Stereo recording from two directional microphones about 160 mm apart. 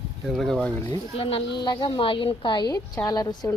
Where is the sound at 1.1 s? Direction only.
35° left (ahead or behind).